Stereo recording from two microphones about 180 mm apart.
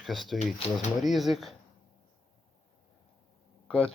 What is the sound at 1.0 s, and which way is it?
Speech, centre (ahead or behind).